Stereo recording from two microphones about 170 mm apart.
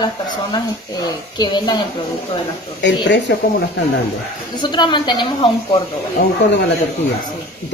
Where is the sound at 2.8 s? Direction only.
90° left.